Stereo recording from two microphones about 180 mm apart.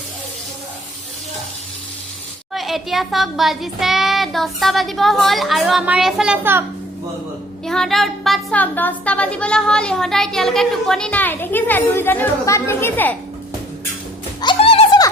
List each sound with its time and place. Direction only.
2.5 s a woman's voice: centre (ahead or behind)
7.6 s a woman's voice: centre (ahead or behind)
14.4 s music: 30° left (ahead or behind)